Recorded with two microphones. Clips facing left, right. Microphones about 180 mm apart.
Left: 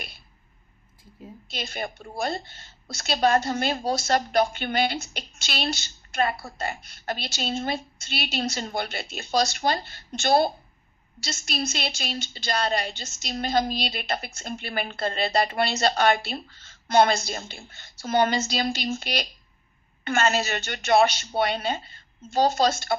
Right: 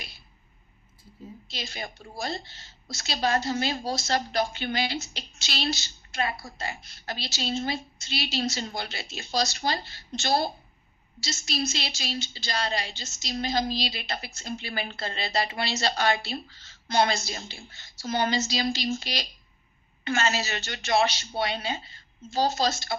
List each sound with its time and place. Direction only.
1.5 s a woman's voice: 55° left (ahead or behind)